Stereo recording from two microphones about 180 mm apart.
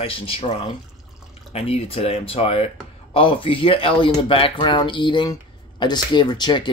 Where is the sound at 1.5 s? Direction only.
35° left (ahead or behind).